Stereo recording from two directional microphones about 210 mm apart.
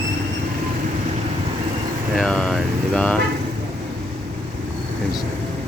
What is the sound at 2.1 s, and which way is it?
Speech, centre (ahead or behind).